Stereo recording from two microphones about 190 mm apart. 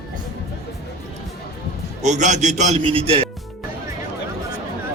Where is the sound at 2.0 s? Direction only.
40° right (ahead or behind).